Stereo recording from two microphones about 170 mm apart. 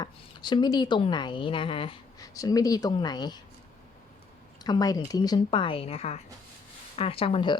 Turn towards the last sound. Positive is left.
turn(degrees=30)  # may be behind; listen again after turning